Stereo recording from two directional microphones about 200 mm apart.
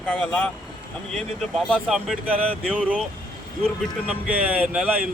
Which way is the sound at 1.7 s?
5° right (ahead or behind).